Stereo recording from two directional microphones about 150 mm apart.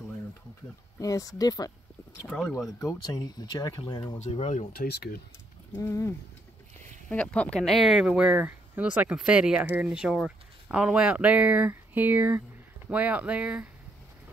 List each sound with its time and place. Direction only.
0.9 s speech: 25° left (ahead or behind)
2.2 s speech: 10° left (ahead or behind)
2.8 s speech: 25° left (ahead or behind)
4.2 s speech: 45° left (ahead or behind)
4.7 s speech: 90° left
5.8 s speech: 20° left (ahead or behind)
7.1 s speech: 5° left (ahead or behind); by 13.7 s 10° right (ahead or behind)